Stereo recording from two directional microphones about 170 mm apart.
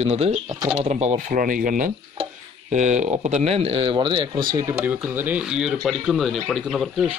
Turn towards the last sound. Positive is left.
turn(degrees=0)  # may be behind; listen again after turning